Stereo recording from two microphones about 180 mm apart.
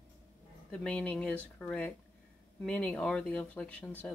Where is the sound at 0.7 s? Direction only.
5° left (ahead or behind).